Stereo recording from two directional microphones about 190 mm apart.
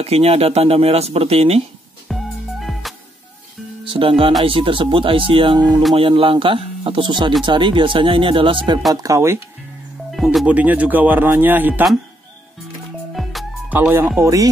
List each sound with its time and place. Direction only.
0.0 s speech: 30° right (ahead or behind)
2.0 s music: centre (ahead or behind)
3.8 s speech: 25° right (ahead or behind)
10.1 s speech: centre (ahead or behind)
13.1 s music: centre (ahead or behind)
13.7 s speech: 10° right (ahead or behind)